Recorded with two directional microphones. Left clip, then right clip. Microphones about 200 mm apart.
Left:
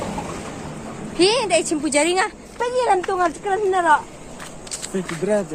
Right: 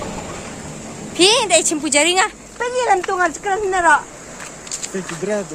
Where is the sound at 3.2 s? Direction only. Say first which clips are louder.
Right 2 dB; 30° right (ahead or behind).